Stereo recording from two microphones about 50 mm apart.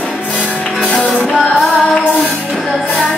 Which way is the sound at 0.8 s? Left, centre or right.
Left.